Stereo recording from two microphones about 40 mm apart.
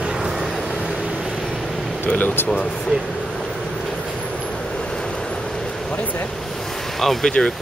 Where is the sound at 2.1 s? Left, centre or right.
Left.